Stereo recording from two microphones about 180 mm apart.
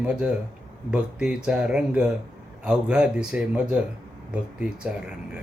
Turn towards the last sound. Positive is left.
turn(degrees=-5)  # may be behind; listen again after turning